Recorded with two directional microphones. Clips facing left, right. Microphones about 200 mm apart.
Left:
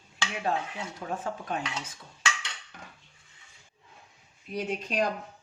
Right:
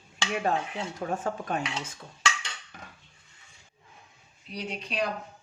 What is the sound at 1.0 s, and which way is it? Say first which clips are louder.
Speech: right 4 dB; 50° right (ahead or behind).